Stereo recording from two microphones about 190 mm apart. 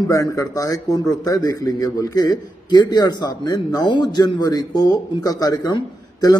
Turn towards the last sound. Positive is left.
turn(degrees=20)  # may be behind; listen again after turning